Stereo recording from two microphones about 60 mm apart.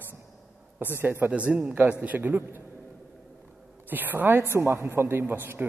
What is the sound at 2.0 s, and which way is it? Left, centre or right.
Speech, right.